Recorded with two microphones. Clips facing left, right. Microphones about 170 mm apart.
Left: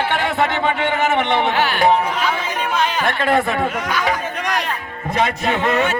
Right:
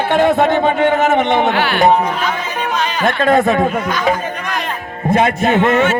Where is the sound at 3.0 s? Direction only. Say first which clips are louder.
Right 9 dB; 45° right (ahead or behind).